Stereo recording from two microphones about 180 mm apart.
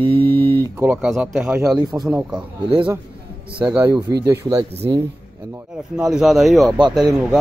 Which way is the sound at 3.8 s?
20° right (ahead or behind).